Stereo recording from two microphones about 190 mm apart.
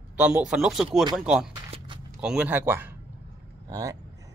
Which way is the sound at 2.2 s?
5° right (ahead or behind).